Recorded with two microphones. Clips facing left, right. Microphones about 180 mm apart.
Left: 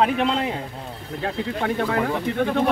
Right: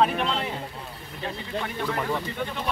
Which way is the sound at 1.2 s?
90° left.